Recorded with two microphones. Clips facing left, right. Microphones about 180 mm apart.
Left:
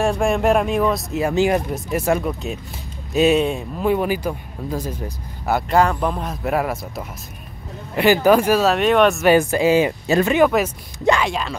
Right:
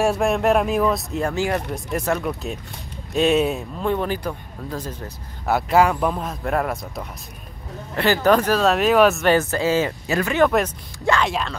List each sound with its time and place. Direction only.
0.0 s speech: 5° right (ahead or behind)
1.3 s speech: 20° left (ahead or behind)
1.7 s speech: 5° left (ahead or behind)
3.9 s speech: 10° left (ahead or behind)
5.5 s speech: 5° right (ahead or behind)
9.3 s speech: 15° left (ahead or behind)
10.0 s speech: 25° left (ahead or behind)
10.3 s speech: 10° left (ahead or behind)